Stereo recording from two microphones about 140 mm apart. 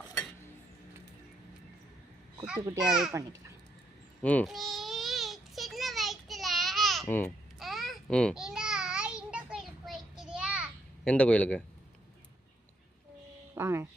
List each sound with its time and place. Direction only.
2.6 s a child's voice: 30° right (ahead or behind)
4.2 s a child's voice: 10° left (ahead or behind)
4.4 s a sound: centre (ahead or behind)
7.1 s a man's voice: 15° left (ahead or behind)
7.6 s a sound: centre (ahead or behind)
11.0 s a man's voice: 10° left (ahead or behind)
13.6 s speech: 20° right (ahead or behind)